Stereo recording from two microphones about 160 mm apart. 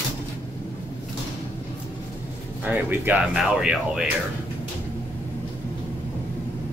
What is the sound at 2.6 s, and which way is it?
Speech, 10° right (ahead or behind).